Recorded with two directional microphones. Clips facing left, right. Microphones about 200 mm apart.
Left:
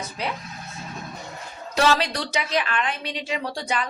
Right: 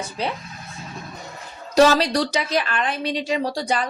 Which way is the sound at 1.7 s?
40° right (ahead or behind).